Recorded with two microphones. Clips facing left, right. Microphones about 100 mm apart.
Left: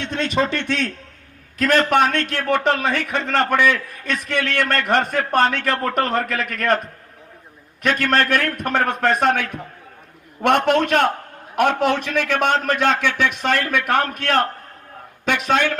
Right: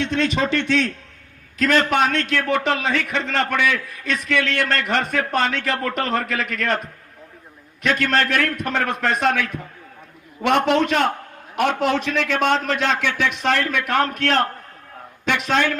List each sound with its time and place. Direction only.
0.0 s a man's voice: 45° left (ahead or behind)
7.8 s a man's voice: 50° left (ahead or behind)